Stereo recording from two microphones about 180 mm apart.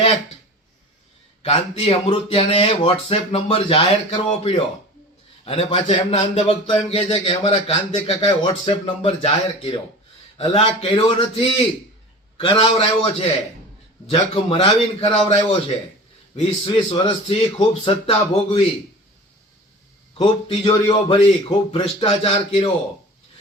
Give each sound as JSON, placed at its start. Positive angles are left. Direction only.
{"t": 1.4, "sound": "a man's voice", "side_deg": 35}
{"t": 20.1, "sound": "a man's voice", "side_deg": 30}